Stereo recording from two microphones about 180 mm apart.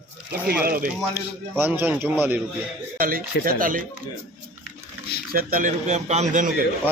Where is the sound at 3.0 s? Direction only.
50° right (ahead or behind).